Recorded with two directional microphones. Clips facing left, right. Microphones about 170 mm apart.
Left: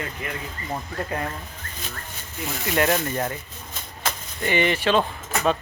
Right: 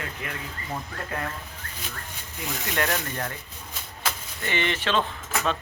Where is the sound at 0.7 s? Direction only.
25° left (ahead or behind).